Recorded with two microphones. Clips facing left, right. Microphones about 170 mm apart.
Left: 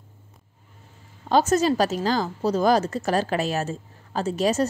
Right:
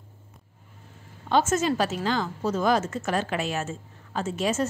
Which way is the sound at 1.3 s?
35° left (ahead or behind).